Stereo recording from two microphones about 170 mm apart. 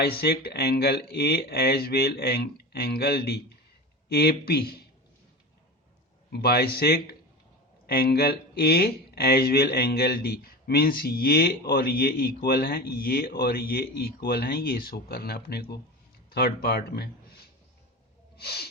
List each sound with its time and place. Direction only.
0.0 s speech: 70° left (ahead or behind)
6.3 s speech: 70° left (ahead or behind)
18.3 s gasp: 70° left (ahead or behind)